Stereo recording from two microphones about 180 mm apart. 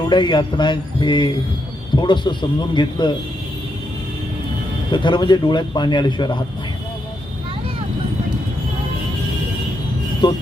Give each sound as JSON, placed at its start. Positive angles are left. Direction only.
{"t": 0.1, "sound": "a man's voice", "side_deg": 25}
{"t": 4.9, "sound": "a man's voice", "side_deg": 25}
{"t": 10.2, "sound": "a man's voice", "side_deg": 25}